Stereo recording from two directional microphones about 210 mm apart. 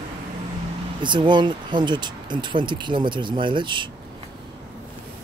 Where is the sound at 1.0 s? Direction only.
20° right (ahead or behind).